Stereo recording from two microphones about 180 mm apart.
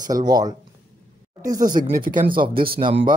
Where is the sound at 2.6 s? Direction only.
30° right (ahead or behind).